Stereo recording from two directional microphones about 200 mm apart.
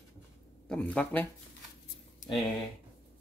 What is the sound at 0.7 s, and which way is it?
Speech, 5° left (ahead or behind).